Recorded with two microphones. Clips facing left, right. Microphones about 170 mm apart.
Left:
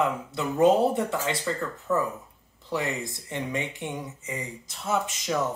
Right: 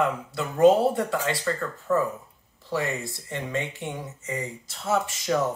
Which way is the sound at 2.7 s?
20° left (ahead or behind).